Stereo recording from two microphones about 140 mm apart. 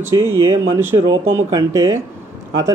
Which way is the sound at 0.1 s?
20° right (ahead or behind).